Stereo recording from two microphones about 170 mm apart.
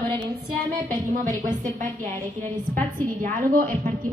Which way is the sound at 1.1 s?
50° right (ahead or behind).